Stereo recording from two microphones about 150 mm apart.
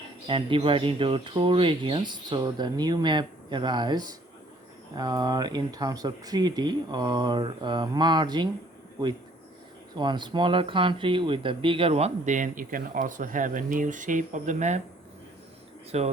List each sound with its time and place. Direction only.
0.3 s speech: 35° right (ahead or behind)
9.9 s speech: 30° right (ahead or behind); by 14.8 s 55° right (ahead or behind)
15.9 s speech: 45° right (ahead or behind)